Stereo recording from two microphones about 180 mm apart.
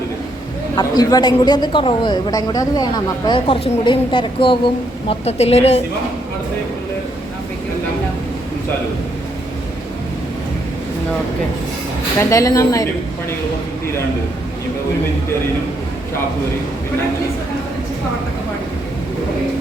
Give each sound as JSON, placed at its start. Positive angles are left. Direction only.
{"t": 0.8, "sound": "speech", "side_deg": 20}
{"t": 12.2, "sound": "a woman's voice", "side_deg": 20}